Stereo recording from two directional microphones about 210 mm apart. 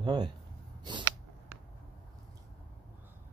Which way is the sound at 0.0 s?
20° right (ahead or behind).